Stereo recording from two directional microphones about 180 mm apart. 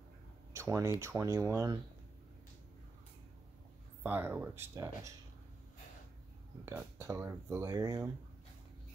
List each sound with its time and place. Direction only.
0.5 s a sound: 15° right (ahead or behind)
1.0 s speech: 15° right (ahead or behind)
4.0 s speech: 10° right (ahead or behind)
6.6 s speech: 15° right (ahead or behind)